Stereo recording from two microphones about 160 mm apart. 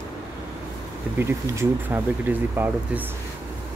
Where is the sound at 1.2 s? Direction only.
15° right (ahead or behind).